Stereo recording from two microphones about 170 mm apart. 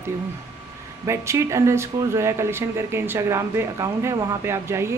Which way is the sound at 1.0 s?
15° right (ahead or behind).